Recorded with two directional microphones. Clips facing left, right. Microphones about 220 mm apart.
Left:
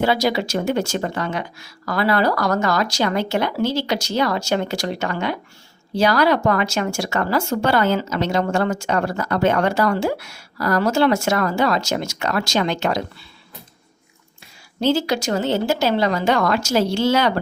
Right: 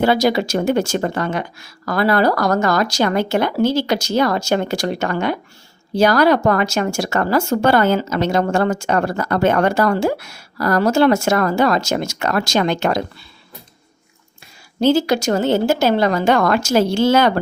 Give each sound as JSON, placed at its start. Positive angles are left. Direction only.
{"t": 0.0, "sound": "speech", "side_deg": -50}
{"t": 14.8, "sound": "speech", "side_deg": -45}